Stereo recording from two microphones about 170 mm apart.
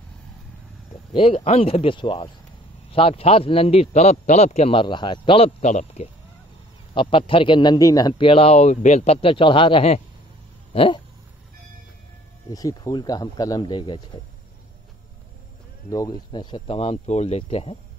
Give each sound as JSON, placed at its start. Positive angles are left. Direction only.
{"t": 1.1, "sound": "a man's voice", "side_deg": 35}
{"t": 6.9, "sound": "a man's voice", "side_deg": 30}
{"t": 10.7, "sound": "a sound", "side_deg": 30}
{"t": 12.4, "sound": "speech", "side_deg": 20}
{"t": 15.9, "sound": "a man's voice", "side_deg": 20}